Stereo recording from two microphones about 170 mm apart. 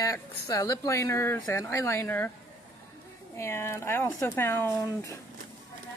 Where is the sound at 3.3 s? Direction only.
15° left (ahead or behind).